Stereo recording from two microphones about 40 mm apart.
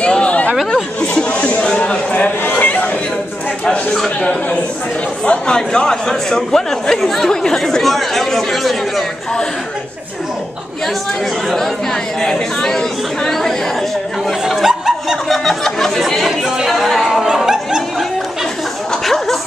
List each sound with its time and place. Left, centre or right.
0.0 s chatter: left
1.2 s a sound: left
2.1 s speech: left
2.6 s chatter: left
4.2 s a man's voice: left; by 9.0 s centre
11.4 s speech: centre
14.6 s chuckle: centre
15.2 s speech: centre
16.3 s speech: centre
16.7 s a sound: centre
19.0 s dog: centre